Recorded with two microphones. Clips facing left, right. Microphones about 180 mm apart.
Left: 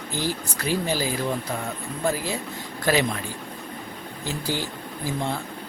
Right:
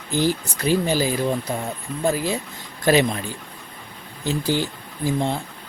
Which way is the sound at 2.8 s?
25° right (ahead or behind).